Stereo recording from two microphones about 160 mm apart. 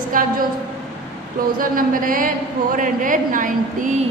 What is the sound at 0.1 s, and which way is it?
Speech, 55° right (ahead or behind).